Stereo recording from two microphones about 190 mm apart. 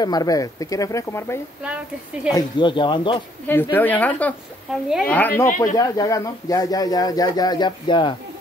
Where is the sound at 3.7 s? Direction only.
10° left (ahead or behind); by 8.2 s 25° left (ahead or behind).